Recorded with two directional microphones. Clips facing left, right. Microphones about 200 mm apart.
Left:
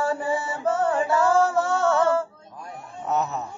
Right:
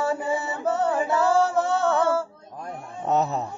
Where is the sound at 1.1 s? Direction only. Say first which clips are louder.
Left 1 dB; 20° right (ahead or behind).